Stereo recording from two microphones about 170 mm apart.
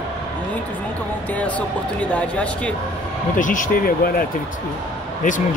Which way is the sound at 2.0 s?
5° left (ahead or behind).